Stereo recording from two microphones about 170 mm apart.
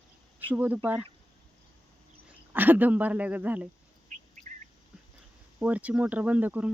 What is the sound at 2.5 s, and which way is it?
Speech, 10° right (ahead or behind).